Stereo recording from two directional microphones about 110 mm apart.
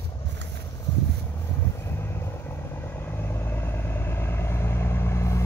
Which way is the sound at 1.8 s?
25° left (ahead or behind).